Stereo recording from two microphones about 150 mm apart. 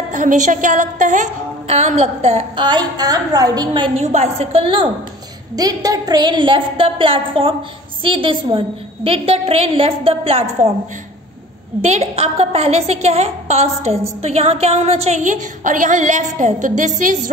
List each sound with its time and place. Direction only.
0.1 s a woman's voice: 55° right (ahead or behind); by 4.0 s 35° right (ahead or behind)
4.0 s a woman's voice: 45° right (ahead or behind)
5.6 s a woman's voice: 25° right (ahead or behind); by 10.7 s 40° right (ahead or behind)
11.8 s a woman's voice: 45° right (ahead or behind)